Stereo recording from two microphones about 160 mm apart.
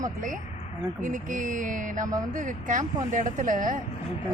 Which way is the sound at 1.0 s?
55° right (ahead or behind).